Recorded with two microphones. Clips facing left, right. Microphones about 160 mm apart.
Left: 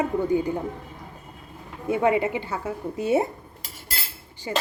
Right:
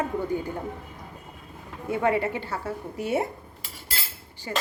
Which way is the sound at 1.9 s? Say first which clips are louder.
Left 3 dB; 20° left (ahead or behind).